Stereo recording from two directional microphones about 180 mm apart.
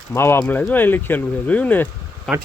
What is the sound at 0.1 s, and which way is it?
Speech, 15° left (ahead or behind).